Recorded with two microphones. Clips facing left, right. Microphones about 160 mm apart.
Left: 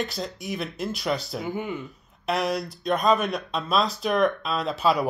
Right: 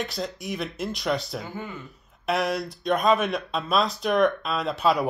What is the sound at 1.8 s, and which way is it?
Speech, centre (ahead or behind).